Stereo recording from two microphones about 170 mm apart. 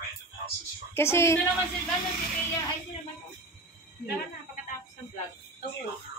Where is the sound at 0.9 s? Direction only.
15° left (ahead or behind).